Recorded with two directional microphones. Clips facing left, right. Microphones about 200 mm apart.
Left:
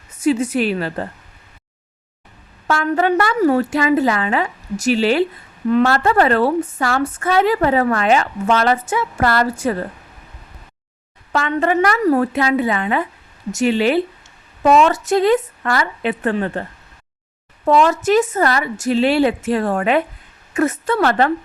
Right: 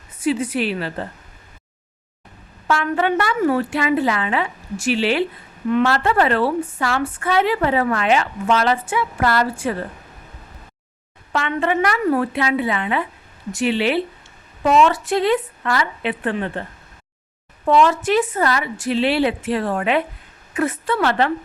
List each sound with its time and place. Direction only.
0.2 s a woman's voice: 45° left (ahead or behind)
2.6 s a woman's voice: 40° left (ahead or behind)
11.3 s a woman's voice: 40° left (ahead or behind)
17.7 s a woman's voice: 40° left (ahead or behind)